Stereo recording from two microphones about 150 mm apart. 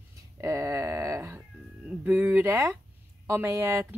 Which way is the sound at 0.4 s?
20° right (ahead or behind).